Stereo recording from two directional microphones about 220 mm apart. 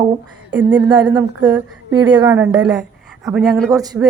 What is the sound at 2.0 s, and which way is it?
Speech, 20° right (ahead or behind).